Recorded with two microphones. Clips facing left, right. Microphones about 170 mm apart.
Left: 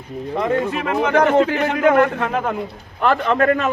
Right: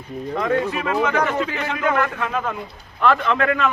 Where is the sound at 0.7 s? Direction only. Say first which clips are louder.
Left 3 dB; 55° left (ahead or behind).